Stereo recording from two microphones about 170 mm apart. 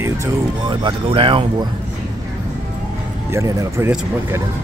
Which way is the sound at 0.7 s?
30° right (ahead or behind).